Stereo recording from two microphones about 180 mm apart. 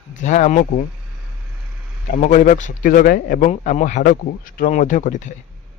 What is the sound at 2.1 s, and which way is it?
Speech, 45° left (ahead or behind).